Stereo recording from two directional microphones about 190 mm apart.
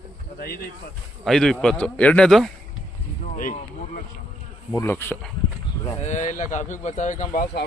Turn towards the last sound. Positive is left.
turn(degrees=45)  # may be behind; listen again after turning